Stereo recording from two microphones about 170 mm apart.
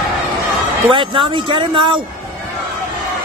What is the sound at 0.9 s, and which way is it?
Speech, 30° right (ahead or behind).